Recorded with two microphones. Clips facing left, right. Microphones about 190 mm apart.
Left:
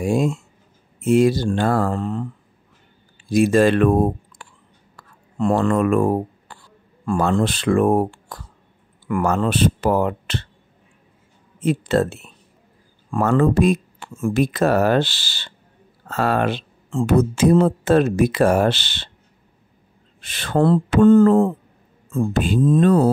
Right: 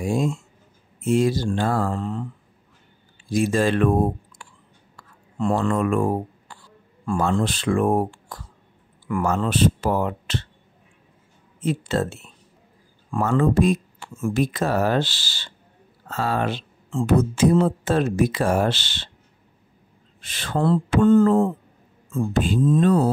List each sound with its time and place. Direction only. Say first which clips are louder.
0.0 s speech: left 3 dB; 65° left (ahead or behind)
3.3 s speech: left 5 dB; 60° left (ahead or behind)
4.4 s a sound: left 2 dB; 55° left (ahead or behind)
5.4 s speech: left 4 dB; 60° left (ahead or behind)
11.6 s speech: left 5 dB; 60° left (ahead or behind)
20.2 s speech: left 6 dB; 60° left (ahead or behind)